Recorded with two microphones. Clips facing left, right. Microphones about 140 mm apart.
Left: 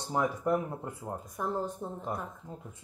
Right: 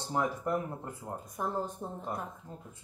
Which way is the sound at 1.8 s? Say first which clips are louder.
Left 2 dB; 15° right (ahead or behind).